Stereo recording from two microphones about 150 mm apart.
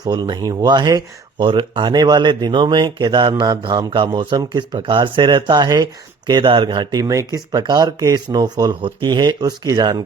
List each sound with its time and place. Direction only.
0.0 s speech: 30° right (ahead or behind)